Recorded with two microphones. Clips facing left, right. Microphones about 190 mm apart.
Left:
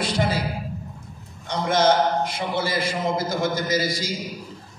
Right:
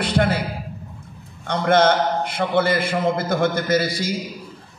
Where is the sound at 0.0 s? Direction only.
60° right (ahead or behind).